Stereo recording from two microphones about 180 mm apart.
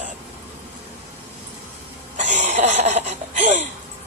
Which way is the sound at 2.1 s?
40° right (ahead or behind).